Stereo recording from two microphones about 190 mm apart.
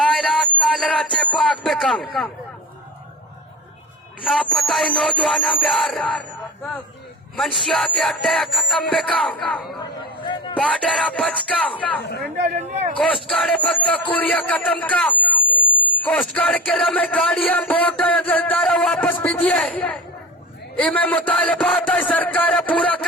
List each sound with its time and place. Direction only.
0.0 s a sound: centre (ahead or behind)
1.6 s music: centre (ahead or behind)
4.3 s music: centre (ahead or behind)
7.3 s music: centre (ahead or behind)
12.4 s speech: 35° right (ahead or behind)
13.2 s speech: 5° left (ahead or behind)